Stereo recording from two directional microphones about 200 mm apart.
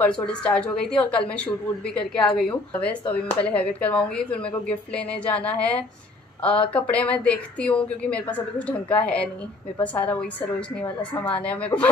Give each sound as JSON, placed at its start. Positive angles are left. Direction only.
{"t": 0.0, "sound": "a woman's voice", "side_deg": 5}
{"t": 10.8, "sound": "a woman's voice", "side_deg": 5}